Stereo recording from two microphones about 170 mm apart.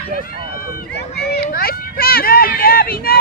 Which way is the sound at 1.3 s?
65° left (ahead or behind).